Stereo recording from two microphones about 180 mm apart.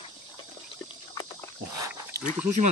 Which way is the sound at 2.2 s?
40° right (ahead or behind).